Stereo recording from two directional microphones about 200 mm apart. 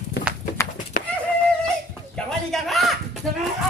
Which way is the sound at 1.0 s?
40° left (ahead or behind).